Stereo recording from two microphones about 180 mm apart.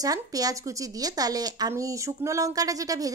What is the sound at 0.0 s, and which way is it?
A woman's voice, 20° right (ahead or behind).